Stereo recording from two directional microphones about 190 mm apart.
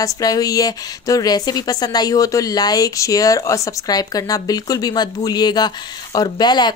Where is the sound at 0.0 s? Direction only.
20° left (ahead or behind).